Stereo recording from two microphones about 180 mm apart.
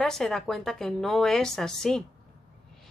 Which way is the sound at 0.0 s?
5° left (ahead or behind).